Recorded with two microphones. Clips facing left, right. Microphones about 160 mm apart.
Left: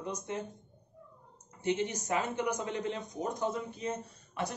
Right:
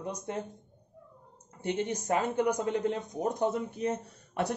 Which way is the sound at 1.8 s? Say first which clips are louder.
Right 3 dB; 50° right (ahead or behind).